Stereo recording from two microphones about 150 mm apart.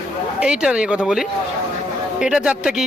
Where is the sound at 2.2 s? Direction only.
5° right (ahead or behind).